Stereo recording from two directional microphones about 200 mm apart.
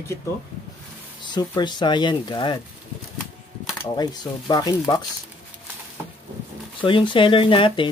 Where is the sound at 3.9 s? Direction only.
20° left (ahead or behind).